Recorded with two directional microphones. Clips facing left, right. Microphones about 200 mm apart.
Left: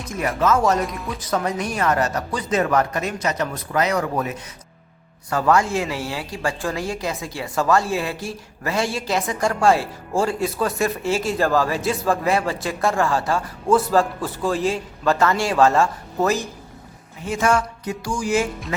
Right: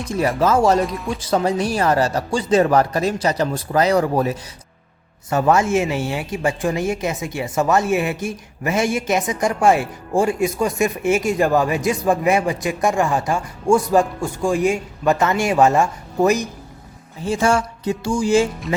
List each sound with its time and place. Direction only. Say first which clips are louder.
0.1 s speech: right 3 dB; 30° right (ahead or behind)
0.9 s speech: right 4 dB; centre (ahead or behind)
1.2 s speech: right 5 dB; 30° right (ahead or behind)
17.2 s speech: right 2 dB; 30° right (ahead or behind)